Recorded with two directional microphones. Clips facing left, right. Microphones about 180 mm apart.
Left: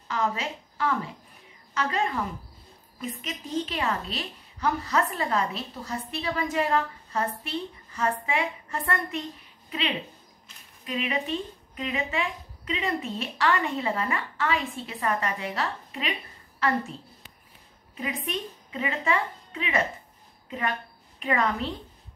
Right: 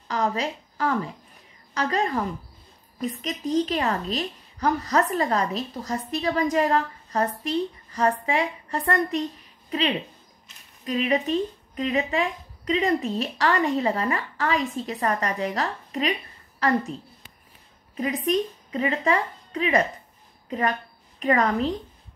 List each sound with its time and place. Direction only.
0.1 s a woman's voice: 40° right (ahead or behind)
17.9 s a woman's voice: 40° right (ahead or behind)